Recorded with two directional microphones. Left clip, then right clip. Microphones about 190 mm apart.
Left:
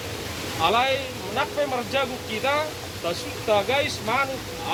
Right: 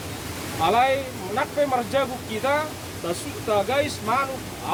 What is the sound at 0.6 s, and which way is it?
Speech, 65° right (ahead or behind).